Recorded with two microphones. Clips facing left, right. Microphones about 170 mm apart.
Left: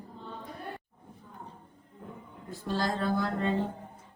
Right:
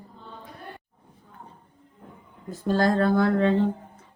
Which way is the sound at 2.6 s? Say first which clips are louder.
Right 9 dB; 50° right (ahead or behind).